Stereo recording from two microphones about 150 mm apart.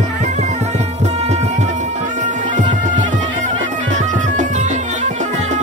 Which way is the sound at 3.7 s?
55° right (ahead or behind).